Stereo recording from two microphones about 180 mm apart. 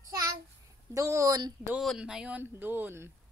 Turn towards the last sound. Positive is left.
turn(degrees=-15)  # may be behind; listen again after turning